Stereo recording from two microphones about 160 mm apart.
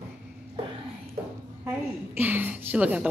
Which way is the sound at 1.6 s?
10° right (ahead or behind).